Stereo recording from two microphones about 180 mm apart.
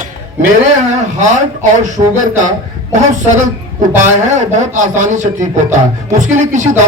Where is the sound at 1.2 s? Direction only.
40° right (ahead or behind).